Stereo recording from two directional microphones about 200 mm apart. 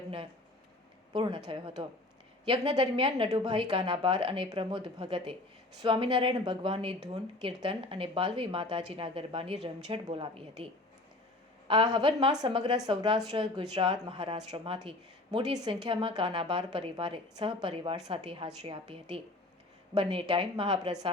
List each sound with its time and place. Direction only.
1.1 s a woman's voice: 25° right (ahead or behind)
11.7 s a woman's voice: 20° right (ahead or behind)